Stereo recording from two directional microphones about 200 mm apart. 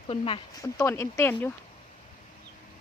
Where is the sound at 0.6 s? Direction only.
15° left (ahead or behind).